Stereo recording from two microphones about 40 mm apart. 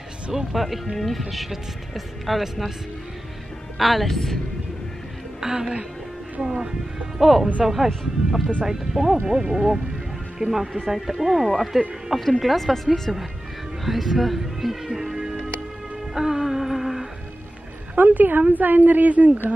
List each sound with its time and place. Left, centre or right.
0.3 s speech: centre
3.7 s speech: centre
5.4 s a woman's voice: centre
7.2 s speech: centre
10.4 s speech: centre
13.8 s music: centre
17.9 s speech: right